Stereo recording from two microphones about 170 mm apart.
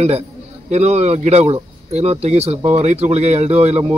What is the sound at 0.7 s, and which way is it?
Speech, 40° right (ahead or behind).